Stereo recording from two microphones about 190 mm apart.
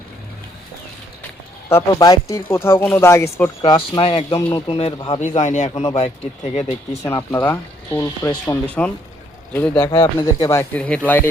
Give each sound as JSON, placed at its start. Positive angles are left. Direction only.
{"t": 1.7, "sound": "speech", "side_deg": 20}
{"t": 3.7, "sound": "speech", "side_deg": 30}
{"t": 5.2, "sound": "a man's voice", "side_deg": 40}
{"t": 5.7, "sound": "a man's voice", "side_deg": 25}
{"t": 7.0, "sound": "speech", "side_deg": 15}
{"t": 8.6, "sound": "speech", "side_deg": 5}
{"t": 9.9, "sound": "speech", "side_deg": 25}